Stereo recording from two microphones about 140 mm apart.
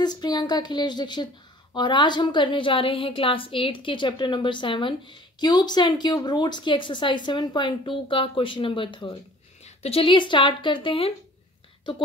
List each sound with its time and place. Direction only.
0.0 s a woman's voice: 30° left (ahead or behind)